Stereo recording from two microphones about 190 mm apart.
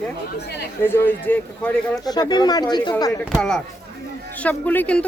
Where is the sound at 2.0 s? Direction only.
20° left (ahead or behind).